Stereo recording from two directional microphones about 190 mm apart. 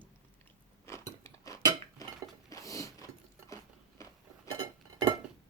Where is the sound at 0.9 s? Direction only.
15° left (ahead or behind).